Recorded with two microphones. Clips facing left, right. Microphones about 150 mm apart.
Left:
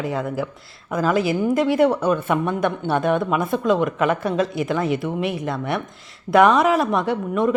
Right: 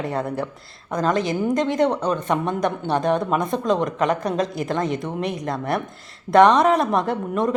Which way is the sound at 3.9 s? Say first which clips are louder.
Left 1 dB; 35° right (ahead or behind).